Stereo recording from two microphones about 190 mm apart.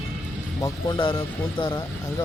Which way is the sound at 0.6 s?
25° left (ahead or behind).